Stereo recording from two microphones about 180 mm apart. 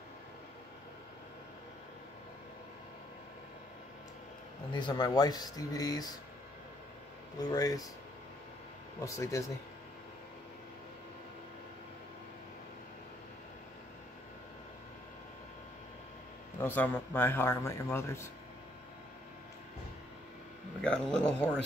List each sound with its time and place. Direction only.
4.7 s speech: 25° left (ahead or behind)
7.3 s speech: 20° left (ahead or behind)
9.0 s a man's voice: 15° left (ahead or behind)
16.5 s a man's voice: 10° left (ahead or behind)
20.8 s a man's voice: 5° left (ahead or behind)